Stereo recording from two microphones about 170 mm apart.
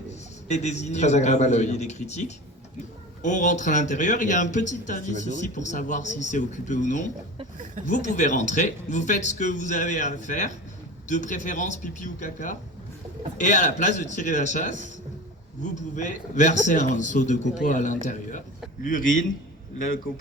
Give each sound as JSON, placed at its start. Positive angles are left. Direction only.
{"t": 0.4, "sound": "a man's voice", "side_deg": 40}
{"t": 7.8, "sound": "speech", "side_deg": -50}
{"t": 8.1, "sound": "a man's voice", "side_deg": 45}
{"t": 16.0, "sound": "a man's voice", "side_deg": 45}